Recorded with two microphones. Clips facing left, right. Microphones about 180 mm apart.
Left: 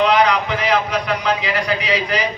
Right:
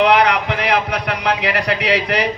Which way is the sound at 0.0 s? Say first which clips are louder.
Right 1 dB; 65° right (ahead or behind).